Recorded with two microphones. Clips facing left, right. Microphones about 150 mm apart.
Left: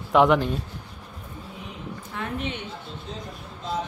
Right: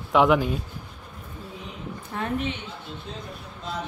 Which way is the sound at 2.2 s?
40° right (ahead or behind).